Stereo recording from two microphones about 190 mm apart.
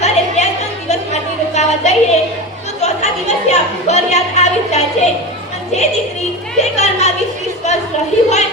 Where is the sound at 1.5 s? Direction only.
35° left (ahead or behind).